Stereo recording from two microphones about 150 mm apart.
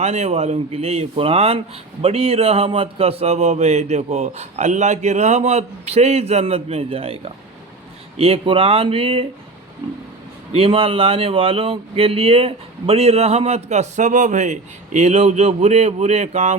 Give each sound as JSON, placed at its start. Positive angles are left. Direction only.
{"t": 0.0, "sound": "speech", "side_deg": -45}
{"t": 10.5, "sound": "speech", "side_deg": -40}